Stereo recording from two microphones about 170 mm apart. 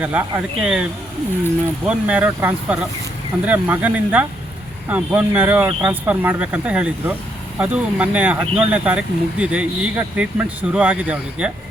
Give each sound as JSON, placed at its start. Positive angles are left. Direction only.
{"t": 0.0, "sound": "speech", "side_deg": -10}
{"t": 1.9, "sound": "speech", "side_deg": -10}